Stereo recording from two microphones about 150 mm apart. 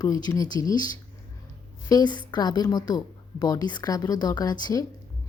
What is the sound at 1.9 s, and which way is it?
Speech, 30° left (ahead or behind).